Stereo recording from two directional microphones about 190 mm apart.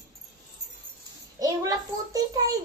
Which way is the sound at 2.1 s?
20° right (ahead or behind).